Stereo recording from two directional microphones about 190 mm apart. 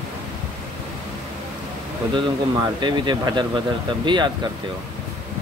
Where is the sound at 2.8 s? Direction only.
25° right (ahead or behind).